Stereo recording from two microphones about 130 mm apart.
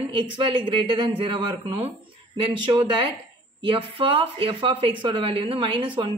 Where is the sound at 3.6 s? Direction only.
40° right (ahead or behind).